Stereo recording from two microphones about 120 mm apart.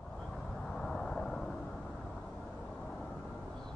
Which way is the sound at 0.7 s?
5° left (ahead or behind).